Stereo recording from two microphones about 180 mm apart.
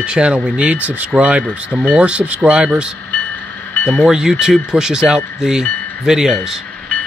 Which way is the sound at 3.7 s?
10° left (ahead or behind).